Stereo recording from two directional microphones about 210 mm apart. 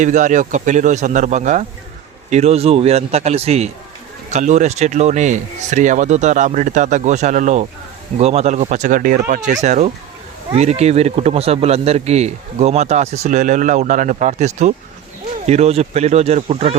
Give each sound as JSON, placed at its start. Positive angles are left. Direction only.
{"t": 0.0, "sound": "a man's voice", "side_deg": -35}